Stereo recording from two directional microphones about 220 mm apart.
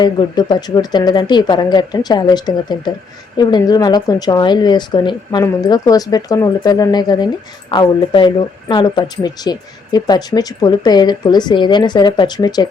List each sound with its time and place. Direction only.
0.0 s speech: 20° left (ahead or behind)